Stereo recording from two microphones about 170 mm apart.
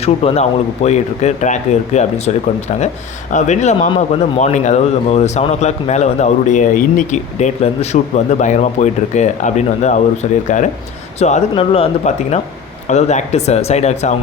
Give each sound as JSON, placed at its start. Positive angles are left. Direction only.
{"t": 0.0, "sound": "speech", "side_deg": 35}
{"t": 3.3, "sound": "speech", "side_deg": 45}